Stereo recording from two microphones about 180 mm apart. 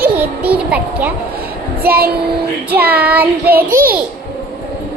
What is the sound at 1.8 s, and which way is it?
Child singing, 55° right (ahead or behind).